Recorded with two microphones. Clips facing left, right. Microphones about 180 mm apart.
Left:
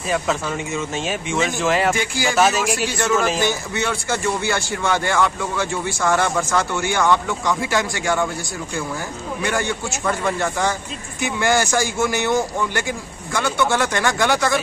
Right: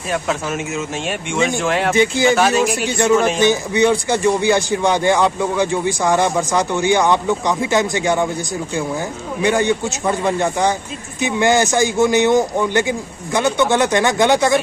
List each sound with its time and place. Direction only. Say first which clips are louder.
0.9 s speech: right 2 dB; centre (ahead or behind)
2.0 s a man's voice: right 9 dB; 20° right (ahead or behind)
2.3 s speech: right 3 dB; centre (ahead or behind)
2.9 s a man's voice: right 7 dB; 20° right (ahead or behind)
9.4 s a man's voice: right 7 dB; 20° right (ahead or behind)